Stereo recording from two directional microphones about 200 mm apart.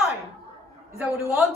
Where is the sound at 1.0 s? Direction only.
10° right (ahead or behind).